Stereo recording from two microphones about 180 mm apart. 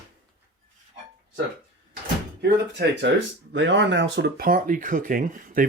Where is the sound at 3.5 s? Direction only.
90° right.